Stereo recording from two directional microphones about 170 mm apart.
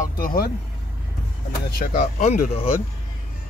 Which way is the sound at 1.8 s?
50° left (ahead or behind).